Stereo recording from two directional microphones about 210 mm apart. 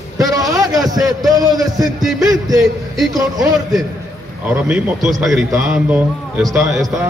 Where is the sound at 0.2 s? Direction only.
15° right (ahead or behind).